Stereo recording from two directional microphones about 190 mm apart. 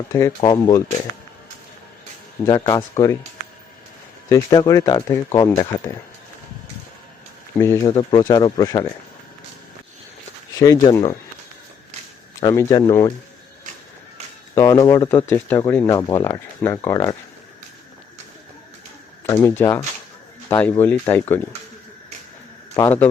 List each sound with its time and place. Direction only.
0.1 s speech: 15° left (ahead or behind)
2.4 s speech: 20° left (ahead or behind)
4.4 s speech: 20° left (ahead or behind)
7.6 s speech: 15° left (ahead or behind)
10.6 s speech: 15° left (ahead or behind)
12.4 s speech: 15° left (ahead or behind)
14.5 s speech: 15° left (ahead or behind)
19.2 s speech: 15° left (ahead or behind)
22.8 s speech: 10° left (ahead or behind)